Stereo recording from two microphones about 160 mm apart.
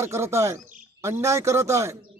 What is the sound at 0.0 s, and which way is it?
Speech, 15° right (ahead or behind).